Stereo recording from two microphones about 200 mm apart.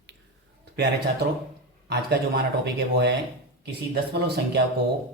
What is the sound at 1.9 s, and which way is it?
Speech, 55° right (ahead or behind).